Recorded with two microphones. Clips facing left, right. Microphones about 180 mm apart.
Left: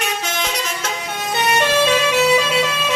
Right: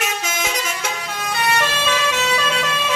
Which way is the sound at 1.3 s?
20° left (ahead or behind).